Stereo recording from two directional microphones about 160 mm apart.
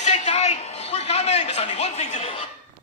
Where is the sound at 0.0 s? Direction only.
45° left (ahead or behind).